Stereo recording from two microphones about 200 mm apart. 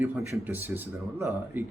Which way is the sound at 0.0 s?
10° right (ahead or behind).